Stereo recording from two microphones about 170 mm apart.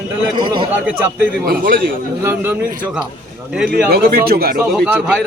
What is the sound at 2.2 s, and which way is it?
Speech, 10° right (ahead or behind).